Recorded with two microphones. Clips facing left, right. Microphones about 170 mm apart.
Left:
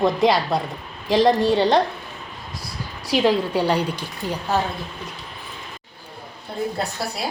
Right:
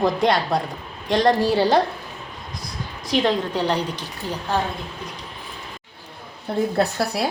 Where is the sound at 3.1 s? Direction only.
10° left (ahead or behind).